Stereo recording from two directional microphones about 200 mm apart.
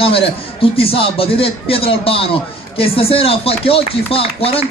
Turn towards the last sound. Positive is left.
turn(degrees=30)  # may be behind; listen again after turning